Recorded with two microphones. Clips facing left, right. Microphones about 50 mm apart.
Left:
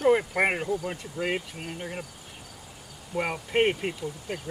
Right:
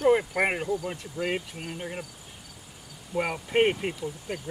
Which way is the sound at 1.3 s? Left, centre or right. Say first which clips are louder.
Even; centre.